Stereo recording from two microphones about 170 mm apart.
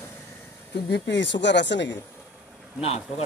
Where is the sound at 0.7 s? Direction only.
85° left.